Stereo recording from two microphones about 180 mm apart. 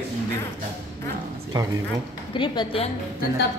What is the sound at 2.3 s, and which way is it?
Speech, 25° left (ahead or behind).